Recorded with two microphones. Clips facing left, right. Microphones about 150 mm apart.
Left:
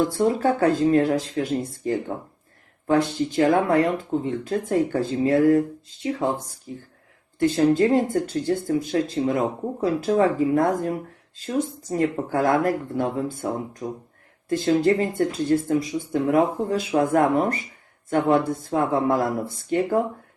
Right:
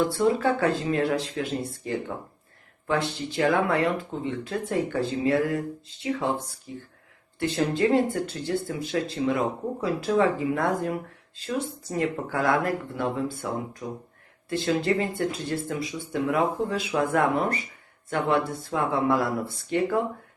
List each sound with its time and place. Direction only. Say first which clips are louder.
0.1 s speech: left 2 dB; 40° left (ahead or behind)
14.5 s speech: left 5 dB; 45° left (ahead or behind)